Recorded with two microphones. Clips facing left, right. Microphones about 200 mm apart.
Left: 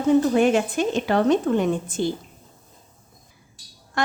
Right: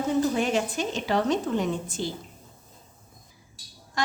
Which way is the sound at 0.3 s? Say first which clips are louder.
Left 7 dB; 55° left (ahead or behind).